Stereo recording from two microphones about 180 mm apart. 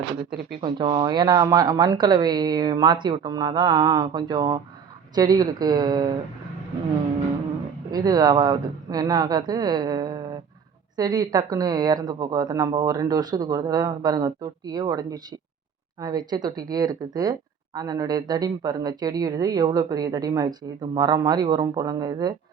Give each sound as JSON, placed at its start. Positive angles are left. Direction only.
{"t": 0.6, "sound": "speech", "side_deg": -30}
{"t": 7.9, "sound": "speech", "side_deg": -20}